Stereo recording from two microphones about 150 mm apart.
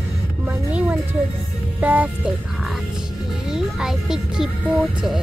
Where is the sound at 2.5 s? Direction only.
Centre (ahead or behind).